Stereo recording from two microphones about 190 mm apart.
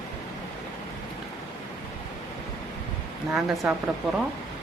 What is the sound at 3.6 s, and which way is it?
Speech, 5° right (ahead or behind).